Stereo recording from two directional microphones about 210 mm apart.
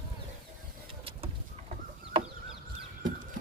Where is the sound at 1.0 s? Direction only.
25° right (ahead or behind).